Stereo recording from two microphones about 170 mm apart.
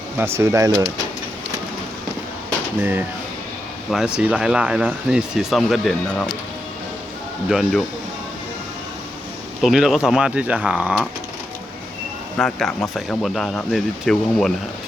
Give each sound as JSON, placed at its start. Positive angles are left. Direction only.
{"t": 0.2, "sound": "speech", "side_deg": -15}
{"t": 3.9, "sound": "speech", "side_deg": -5}
{"t": 7.4, "sound": "speech", "side_deg": 0}
{"t": 9.6, "sound": "speech", "side_deg": 0}
{"t": 12.4, "sound": "speech", "side_deg": 5}